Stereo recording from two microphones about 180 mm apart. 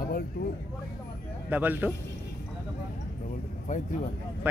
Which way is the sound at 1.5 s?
10° right (ahead or behind).